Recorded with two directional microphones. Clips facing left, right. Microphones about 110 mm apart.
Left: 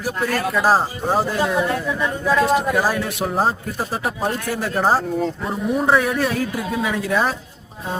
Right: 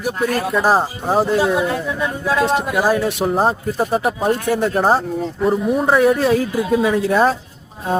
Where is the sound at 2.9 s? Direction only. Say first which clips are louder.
Right 4 dB; 25° right (ahead or behind).